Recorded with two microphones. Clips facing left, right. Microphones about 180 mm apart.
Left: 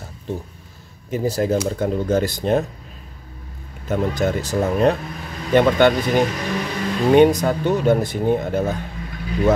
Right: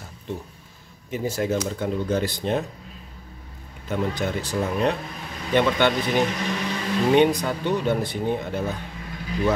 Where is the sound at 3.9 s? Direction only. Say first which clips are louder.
Left 5 dB; 45° left (ahead or behind).